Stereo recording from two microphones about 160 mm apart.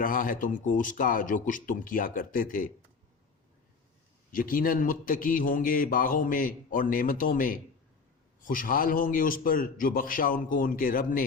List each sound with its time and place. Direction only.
0.0 s a man's voice: 60° left (ahead or behind)
4.3 s a man's voice: 60° left (ahead or behind)